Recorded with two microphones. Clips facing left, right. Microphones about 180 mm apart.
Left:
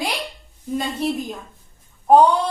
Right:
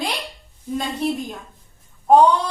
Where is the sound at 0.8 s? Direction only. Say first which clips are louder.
Even; centre (ahead or behind).